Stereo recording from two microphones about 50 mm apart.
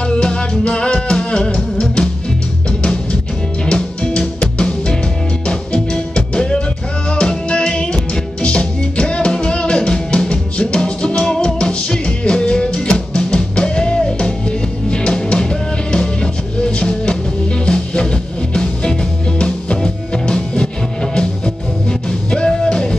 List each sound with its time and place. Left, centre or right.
0.0 s music: centre
22.3 s music: centre